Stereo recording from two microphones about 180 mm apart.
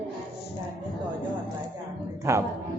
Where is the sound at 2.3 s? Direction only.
15° right (ahead or behind).